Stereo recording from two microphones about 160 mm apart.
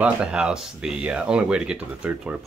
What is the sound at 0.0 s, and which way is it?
Speech, 5° right (ahead or behind).